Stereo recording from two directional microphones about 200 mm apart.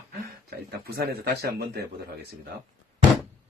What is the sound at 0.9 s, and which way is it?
Speech, 50° right (ahead or behind).